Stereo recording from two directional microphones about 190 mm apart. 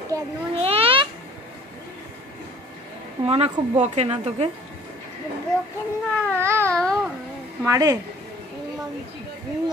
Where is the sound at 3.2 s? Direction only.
30° right (ahead or behind).